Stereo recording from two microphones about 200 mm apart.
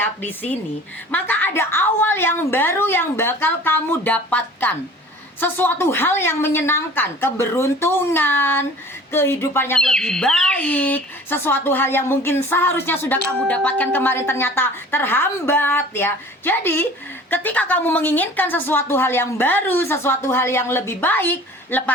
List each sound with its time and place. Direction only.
0.0 s speech: 10° left (ahead or behind)